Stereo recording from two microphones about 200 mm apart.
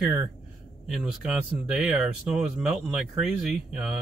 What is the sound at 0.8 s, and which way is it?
Speech, centre (ahead or behind).